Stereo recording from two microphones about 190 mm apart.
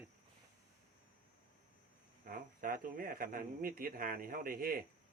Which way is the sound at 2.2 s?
45° right (ahead or behind).